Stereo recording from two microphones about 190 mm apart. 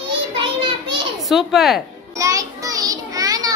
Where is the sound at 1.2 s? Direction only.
Centre (ahead or behind).